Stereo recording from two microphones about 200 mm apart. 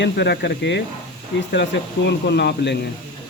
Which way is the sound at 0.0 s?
60° left (ahead or behind).